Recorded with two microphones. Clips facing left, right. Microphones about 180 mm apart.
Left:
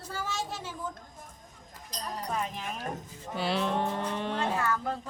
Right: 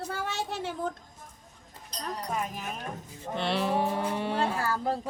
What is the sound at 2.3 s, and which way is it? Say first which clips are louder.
Speech: even; 5° right (ahead or behind).